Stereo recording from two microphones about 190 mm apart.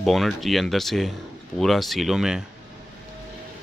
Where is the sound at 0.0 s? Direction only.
Centre (ahead or behind).